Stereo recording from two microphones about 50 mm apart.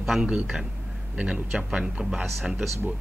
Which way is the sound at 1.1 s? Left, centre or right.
Centre.